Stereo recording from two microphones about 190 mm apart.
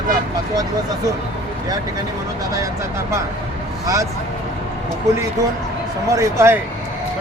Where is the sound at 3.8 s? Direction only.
15° right (ahead or behind).